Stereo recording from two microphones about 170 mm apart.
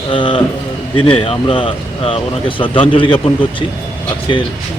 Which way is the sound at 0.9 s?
35° left (ahead or behind).